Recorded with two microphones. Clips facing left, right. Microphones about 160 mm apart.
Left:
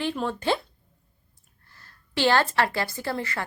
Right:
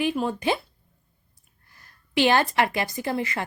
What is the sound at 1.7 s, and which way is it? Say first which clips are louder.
A woman's voice: right 5 dB; 15° right (ahead or behind).